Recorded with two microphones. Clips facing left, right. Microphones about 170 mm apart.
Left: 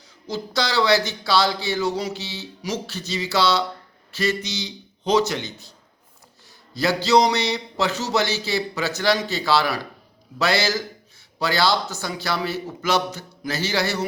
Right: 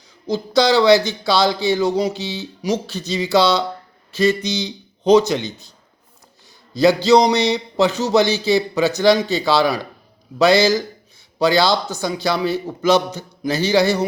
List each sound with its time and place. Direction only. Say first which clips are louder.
0.3 s speech: right 9 dB; 20° right (ahead or behind)
6.7 s speech: right 6 dB; 20° right (ahead or behind)